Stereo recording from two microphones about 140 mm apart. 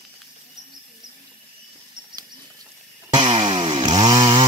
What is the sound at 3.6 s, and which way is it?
Chainsaw, 35° right (ahead or behind).